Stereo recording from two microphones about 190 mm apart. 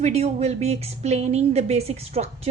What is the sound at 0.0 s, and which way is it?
A woman's voice, 35° right (ahead or behind).